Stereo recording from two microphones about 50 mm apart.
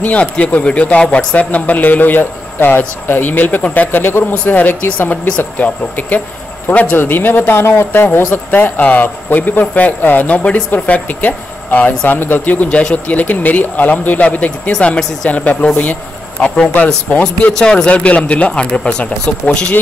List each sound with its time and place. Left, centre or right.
0.0 s speech: left
7.0 s speech: left
8.5 s speech: left
17.2 s speech: centre